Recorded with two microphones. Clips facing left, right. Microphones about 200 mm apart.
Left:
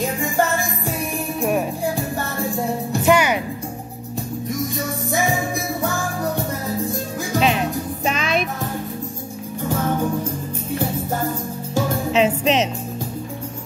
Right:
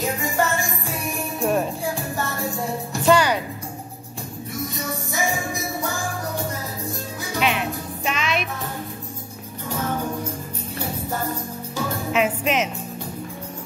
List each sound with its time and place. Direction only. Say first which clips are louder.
1.4 s music: left 1 dB; 10° left (ahead or behind)
3.1 s music: left 1 dB; 20° left (ahead or behind)
7.3 s music: left 4 dB; 35° left (ahead or behind)
12.1 s music: left 3 dB; 30° left (ahead or behind)